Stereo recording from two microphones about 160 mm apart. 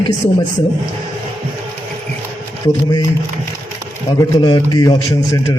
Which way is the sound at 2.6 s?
25° left (ahead or behind).